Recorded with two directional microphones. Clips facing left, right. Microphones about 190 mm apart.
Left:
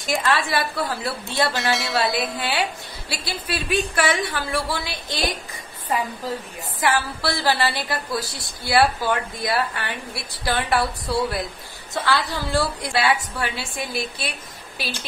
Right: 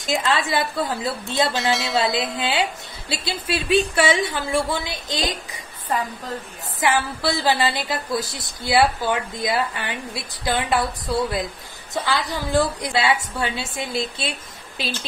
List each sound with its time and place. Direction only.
0.0 s a woman's voice: 20° right (ahead or behind)
1.5 s speech: centre (ahead or behind)
2.0 s a woman's voice: 20° right (ahead or behind)
6.8 s a woman's voice: 20° right (ahead or behind)